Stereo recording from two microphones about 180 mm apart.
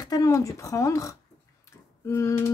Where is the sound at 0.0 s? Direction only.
20° left (ahead or behind).